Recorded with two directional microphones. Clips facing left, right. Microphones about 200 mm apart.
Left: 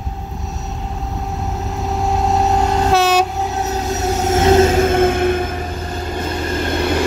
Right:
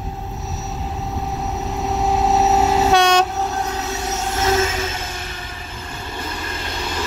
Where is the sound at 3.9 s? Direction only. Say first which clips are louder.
Left 7 dB; 40° left (ahead or behind); by 7.0 s 60° left (ahead or behind).